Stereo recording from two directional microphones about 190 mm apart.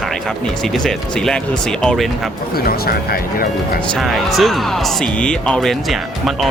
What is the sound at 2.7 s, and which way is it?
Speech, 55° left (ahead or behind).